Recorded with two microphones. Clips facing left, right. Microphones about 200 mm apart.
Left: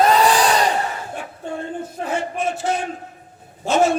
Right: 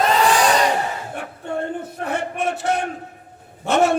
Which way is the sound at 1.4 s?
65° right (ahead or behind).